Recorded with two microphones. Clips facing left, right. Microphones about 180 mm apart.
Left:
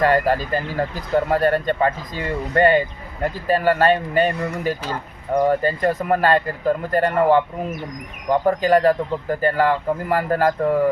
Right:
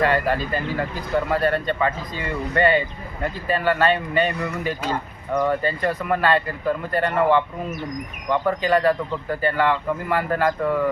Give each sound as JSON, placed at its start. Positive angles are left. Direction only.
{"t": 0.0, "sound": "speech", "side_deg": 45}